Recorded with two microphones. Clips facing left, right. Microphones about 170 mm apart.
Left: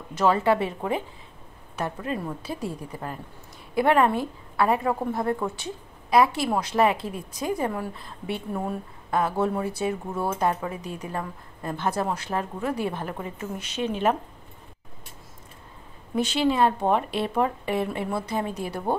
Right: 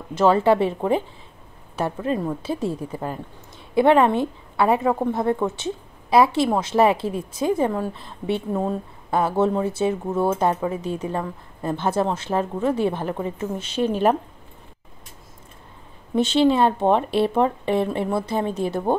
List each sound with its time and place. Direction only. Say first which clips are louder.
0.1 s a woman's voice: right 4 dB; 30° right (ahead or behind)
16.2 s a woman's voice: right 5 dB; 25° right (ahead or behind)